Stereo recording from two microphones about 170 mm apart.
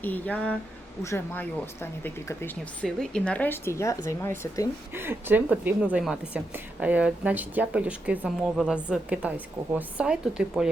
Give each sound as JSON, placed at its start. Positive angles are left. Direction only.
{"t": 0.0, "sound": "speech", "side_deg": 10}
{"t": 4.9, "sound": "a woman's voice", "side_deg": -10}